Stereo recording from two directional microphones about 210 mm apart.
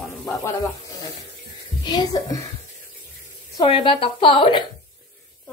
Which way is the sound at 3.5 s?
20° left (ahead or behind).